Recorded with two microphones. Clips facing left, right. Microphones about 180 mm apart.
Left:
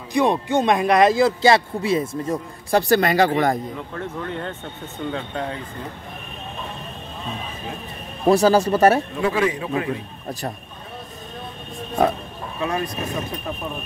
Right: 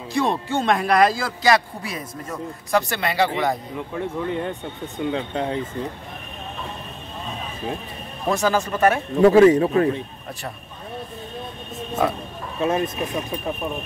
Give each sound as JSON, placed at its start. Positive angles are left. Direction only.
{"t": 0.1, "sound": "speech", "side_deg": 15}
{"t": 3.0, "sound": "speech", "side_deg": 45}
{"t": 3.9, "sound": "speech", "side_deg": -15}
{"t": 8.3, "sound": "speech", "side_deg": 35}
{"t": 9.2, "sound": "speech", "side_deg": -40}
{"t": 12.6, "sound": "speech", "side_deg": -25}